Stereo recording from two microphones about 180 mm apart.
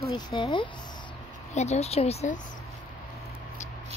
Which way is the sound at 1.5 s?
40° left (ahead or behind).